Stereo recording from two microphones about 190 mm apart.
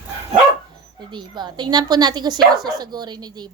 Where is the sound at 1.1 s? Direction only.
25° right (ahead or behind).